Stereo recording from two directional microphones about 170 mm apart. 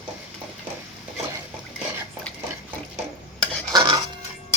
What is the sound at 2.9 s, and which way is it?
Stir, centre (ahead or behind).